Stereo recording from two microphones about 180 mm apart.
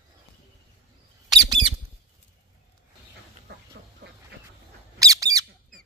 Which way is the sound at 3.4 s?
70° right (ahead or behind).